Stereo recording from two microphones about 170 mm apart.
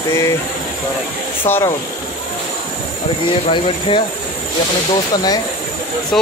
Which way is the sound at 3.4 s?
30° left (ahead or behind).